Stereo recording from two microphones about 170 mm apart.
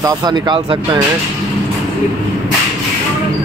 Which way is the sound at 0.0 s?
25° right (ahead or behind).